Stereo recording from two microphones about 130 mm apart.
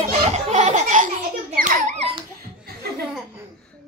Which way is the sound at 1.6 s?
90° right.